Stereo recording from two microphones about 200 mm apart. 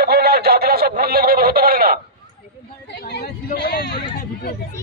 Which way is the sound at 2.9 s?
55° left (ahead or behind).